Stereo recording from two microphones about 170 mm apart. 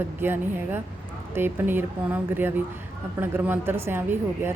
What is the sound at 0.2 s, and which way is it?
Speech, 15° right (ahead or behind).